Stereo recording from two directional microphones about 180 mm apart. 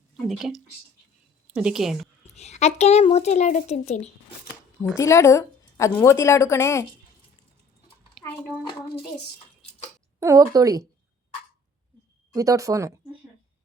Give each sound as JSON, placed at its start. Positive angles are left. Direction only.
{"t": 0.3, "sound": "a woman's voice", "side_deg": 0}
{"t": 2.3, "sound": "a child's voice", "side_deg": 35}
{"t": 4.9, "sound": "a woman's voice", "side_deg": 15}
{"t": 8.2, "sound": "a sound", "side_deg": 0}
{"t": 10.2, "sound": "speech", "side_deg": -20}
{"t": 12.3, "sound": "speech", "side_deg": -20}